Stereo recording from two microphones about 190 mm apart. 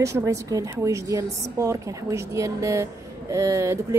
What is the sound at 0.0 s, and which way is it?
A woman's voice, 15° right (ahead or behind).